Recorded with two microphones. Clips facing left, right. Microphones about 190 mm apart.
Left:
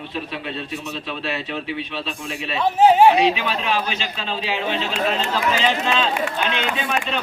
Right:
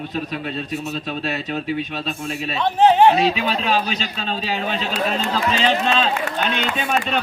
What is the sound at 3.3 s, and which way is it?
A man's voice, 35° right (ahead or behind).